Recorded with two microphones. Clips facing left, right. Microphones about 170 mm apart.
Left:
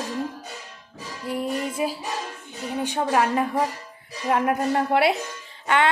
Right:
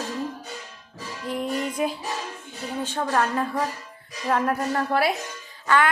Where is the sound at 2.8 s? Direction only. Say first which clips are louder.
Left 2 dB; 15° left (ahead or behind).